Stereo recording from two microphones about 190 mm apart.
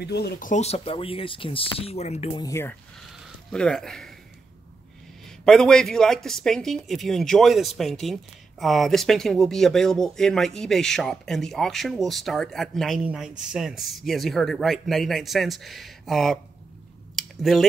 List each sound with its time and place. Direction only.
0.0 s speech: 60° left (ahead or behind)
0.5 s speech: 35° left (ahead or behind)
2.4 s speech: 15° left (ahead or behind)
5.4 s speech: 5° left (ahead or behind)
17.2 s a sound: centre (ahead or behind)